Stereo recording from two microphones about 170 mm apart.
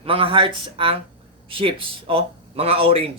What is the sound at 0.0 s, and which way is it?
Speech, 35° right (ahead or behind).